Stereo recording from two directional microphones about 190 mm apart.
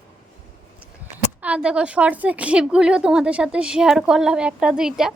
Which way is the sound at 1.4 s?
5° right (ahead or behind).